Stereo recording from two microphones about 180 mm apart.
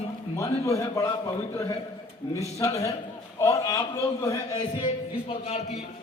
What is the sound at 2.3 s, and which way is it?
A man's voice, 20° left (ahead or behind).